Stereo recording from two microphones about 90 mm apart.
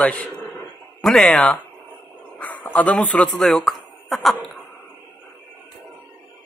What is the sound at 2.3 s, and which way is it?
A man's voice, 15° left (ahead or behind).